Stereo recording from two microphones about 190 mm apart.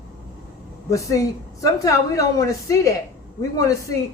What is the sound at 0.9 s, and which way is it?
A woman's voice, 15° left (ahead or behind).